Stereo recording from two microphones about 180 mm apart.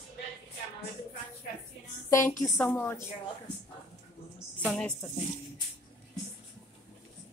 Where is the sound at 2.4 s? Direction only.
15° left (ahead or behind).